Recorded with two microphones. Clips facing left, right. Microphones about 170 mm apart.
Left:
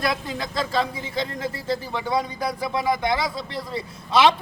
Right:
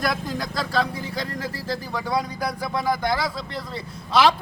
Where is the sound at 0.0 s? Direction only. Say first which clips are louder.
Even; centre (ahead or behind).